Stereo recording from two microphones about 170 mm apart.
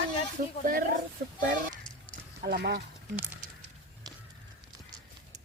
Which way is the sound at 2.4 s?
75° right (ahead or behind).